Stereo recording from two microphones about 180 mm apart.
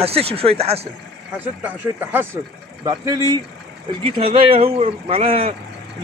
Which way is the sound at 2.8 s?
20° right (ahead or behind).